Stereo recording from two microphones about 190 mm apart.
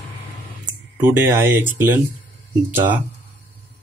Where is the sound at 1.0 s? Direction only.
10° right (ahead or behind).